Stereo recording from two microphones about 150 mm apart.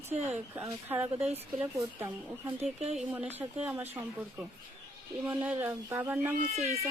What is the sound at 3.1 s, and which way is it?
Speech, 10° right (ahead or behind).